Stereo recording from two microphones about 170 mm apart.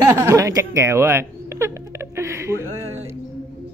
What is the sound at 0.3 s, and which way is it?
Speech, 20° right (ahead or behind).